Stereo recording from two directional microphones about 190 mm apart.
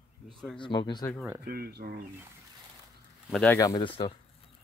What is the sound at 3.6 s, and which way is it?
Speech, 25° left (ahead or behind).